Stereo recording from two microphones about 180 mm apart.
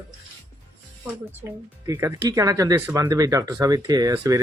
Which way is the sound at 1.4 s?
15° right (ahead or behind).